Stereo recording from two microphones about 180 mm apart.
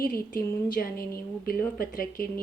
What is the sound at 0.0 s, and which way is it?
A woman's voice, 55° left (ahead or behind).